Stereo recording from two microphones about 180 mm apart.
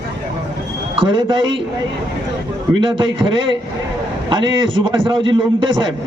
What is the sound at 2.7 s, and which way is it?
A man's voice, 25° right (ahead or behind).